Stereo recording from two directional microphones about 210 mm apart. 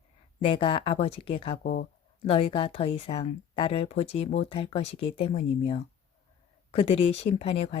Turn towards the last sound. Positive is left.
turn(degrees=30)  # may be behind; listen again after turning